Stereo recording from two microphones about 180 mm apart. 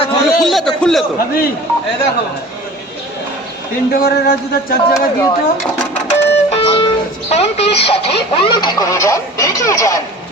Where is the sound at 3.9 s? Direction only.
55° left (ahead or behind).